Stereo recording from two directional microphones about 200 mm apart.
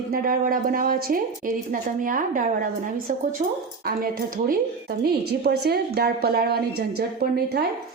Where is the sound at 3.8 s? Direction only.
45° right (ahead or behind).